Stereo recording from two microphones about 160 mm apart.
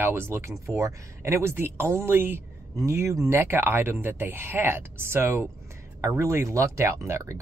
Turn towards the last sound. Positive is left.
turn(degrees=-20)  # may be behind; listen again after turning